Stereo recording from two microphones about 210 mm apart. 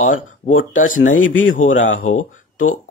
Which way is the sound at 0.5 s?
70° left (ahead or behind).